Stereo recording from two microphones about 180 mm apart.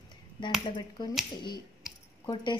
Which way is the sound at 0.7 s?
25° left (ahead or behind).